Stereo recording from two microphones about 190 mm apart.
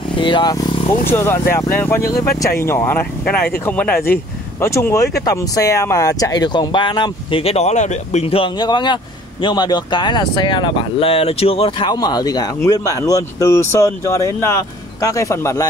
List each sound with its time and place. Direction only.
0.2 s speech: 25° left (ahead or behind)